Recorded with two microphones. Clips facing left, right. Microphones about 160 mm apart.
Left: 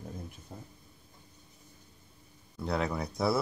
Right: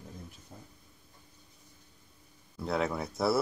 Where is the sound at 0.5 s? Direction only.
50° left (ahead or behind).